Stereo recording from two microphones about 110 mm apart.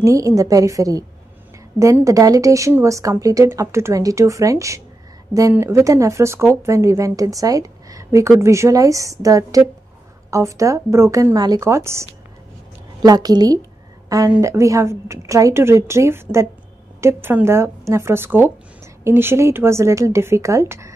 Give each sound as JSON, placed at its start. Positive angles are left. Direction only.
{"t": 0.0, "sound": "a woman's voice", "side_deg": -30}
{"t": 2.0, "sound": "a woman's voice", "side_deg": -30}
{"t": 13.0, "sound": "a woman's voice", "side_deg": -35}